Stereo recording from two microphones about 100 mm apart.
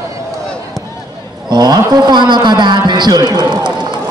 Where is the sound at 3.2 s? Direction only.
45° right (ahead or behind).